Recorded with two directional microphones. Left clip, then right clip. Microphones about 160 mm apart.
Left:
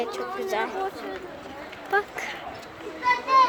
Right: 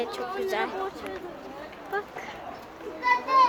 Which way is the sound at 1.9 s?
25° left (ahead or behind).